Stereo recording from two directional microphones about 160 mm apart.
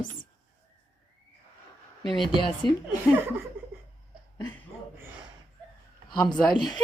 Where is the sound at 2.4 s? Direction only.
30° left (ahead or behind).